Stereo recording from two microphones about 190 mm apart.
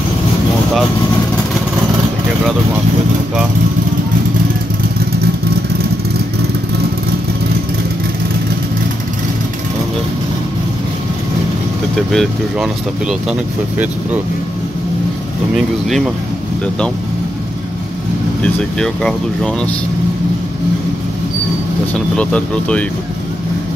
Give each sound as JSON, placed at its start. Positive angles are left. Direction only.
{"t": 12.1, "sound": "speech", "side_deg": 0}
{"t": 18.4, "sound": "speech", "side_deg": 5}
{"t": 22.1, "sound": "speech", "side_deg": 5}